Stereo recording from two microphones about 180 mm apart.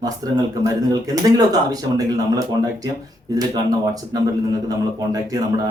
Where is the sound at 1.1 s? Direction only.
20° right (ahead or behind).